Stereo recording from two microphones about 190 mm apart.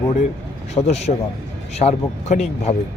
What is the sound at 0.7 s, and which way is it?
Speech, 35° left (ahead or behind).